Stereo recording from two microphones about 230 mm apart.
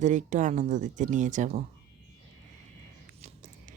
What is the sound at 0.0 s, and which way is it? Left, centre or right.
Speech, right.